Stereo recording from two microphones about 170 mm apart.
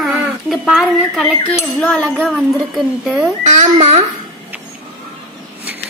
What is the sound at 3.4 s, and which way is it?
Speech, 45° right (ahead or behind).